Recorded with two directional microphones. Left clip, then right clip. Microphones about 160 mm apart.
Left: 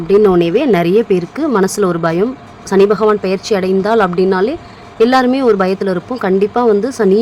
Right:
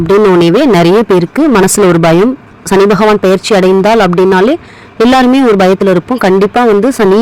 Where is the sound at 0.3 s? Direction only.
35° right (ahead or behind).